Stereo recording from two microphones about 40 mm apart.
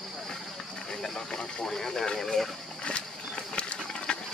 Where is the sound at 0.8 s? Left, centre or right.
Centre.